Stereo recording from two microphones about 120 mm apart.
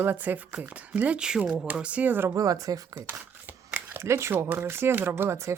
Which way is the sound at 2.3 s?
30° right (ahead or behind).